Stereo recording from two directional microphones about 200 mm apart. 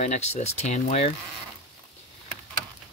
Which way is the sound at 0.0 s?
35° left (ahead or behind).